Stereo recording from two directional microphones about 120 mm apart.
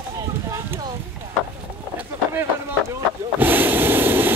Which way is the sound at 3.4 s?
15° right (ahead or behind).